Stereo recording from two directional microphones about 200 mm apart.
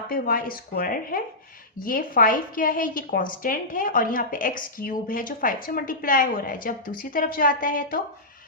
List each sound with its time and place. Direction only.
0.1 s a woman's voice: 45° left (ahead or behind)